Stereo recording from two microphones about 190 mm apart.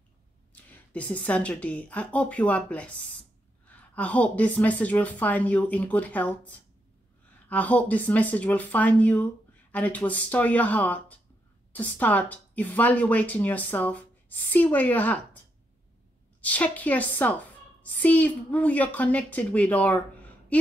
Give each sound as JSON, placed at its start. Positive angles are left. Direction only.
{"t": 0.5, "sound": "speech", "side_deg": 5}
{"t": 16.3, "sound": "speech", "side_deg": 10}